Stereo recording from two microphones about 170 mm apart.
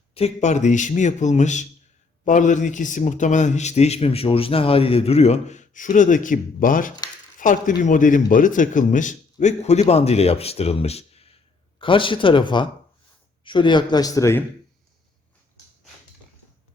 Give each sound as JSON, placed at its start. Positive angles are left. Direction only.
{"t": 0.1, "sound": "a man's voice", "side_deg": 40}